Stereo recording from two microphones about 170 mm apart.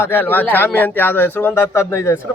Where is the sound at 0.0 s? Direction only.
10° left (ahead or behind).